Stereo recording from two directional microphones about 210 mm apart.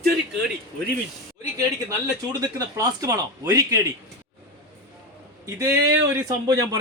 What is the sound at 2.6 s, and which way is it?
A man's voice, 15° right (ahead or behind).